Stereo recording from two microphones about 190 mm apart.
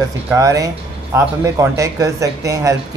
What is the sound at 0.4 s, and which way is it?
Speech, 15° right (ahead or behind).